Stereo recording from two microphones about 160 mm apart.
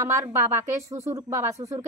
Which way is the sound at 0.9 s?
15° right (ahead or behind).